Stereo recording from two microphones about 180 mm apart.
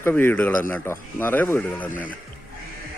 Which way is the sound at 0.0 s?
10° left (ahead or behind).